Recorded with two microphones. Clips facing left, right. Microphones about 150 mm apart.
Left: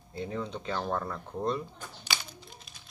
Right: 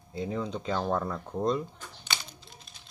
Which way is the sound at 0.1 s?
15° right (ahead or behind).